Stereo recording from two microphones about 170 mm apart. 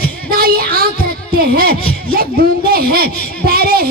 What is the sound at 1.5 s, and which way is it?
Speech, 60° right (ahead or behind).